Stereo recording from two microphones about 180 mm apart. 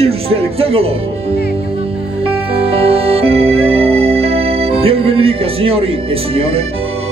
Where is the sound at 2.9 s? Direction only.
30° right (ahead or behind).